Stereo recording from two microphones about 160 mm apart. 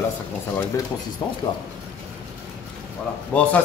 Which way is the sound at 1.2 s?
25° left (ahead or behind).